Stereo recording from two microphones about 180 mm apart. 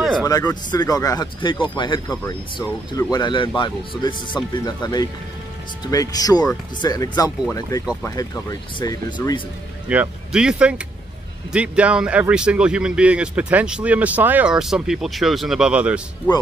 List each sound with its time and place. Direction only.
0.2 s speech: 20° left (ahead or behind)
9.8 s speech: 5° right (ahead or behind)